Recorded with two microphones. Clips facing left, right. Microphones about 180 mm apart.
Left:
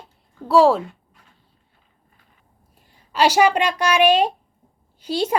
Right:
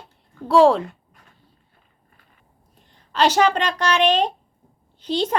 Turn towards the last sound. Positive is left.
turn(degrees=10)  # may be behind; listen again after turning